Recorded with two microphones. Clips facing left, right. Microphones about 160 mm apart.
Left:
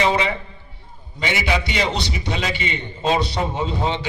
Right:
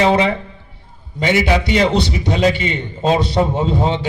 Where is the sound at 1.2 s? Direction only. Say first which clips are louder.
Right 7 dB; 45° right (ahead or behind).